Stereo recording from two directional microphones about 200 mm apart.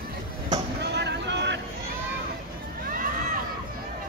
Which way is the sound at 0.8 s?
60° right (ahead or behind).